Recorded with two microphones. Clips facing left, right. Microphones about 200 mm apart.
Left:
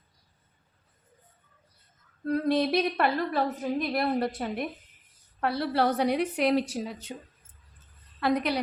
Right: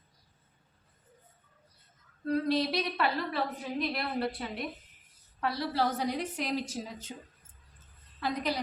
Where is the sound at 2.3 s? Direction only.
55° left (ahead or behind).